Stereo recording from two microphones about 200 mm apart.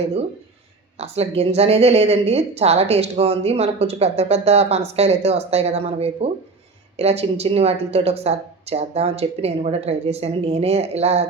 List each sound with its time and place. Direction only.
0.9 s a woman's voice: 30° right (ahead or behind)